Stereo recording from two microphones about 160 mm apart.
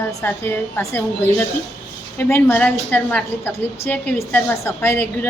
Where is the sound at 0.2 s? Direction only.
15° left (ahead or behind).